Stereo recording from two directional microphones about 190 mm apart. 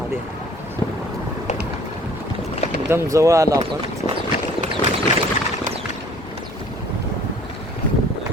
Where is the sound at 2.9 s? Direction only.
15° right (ahead or behind).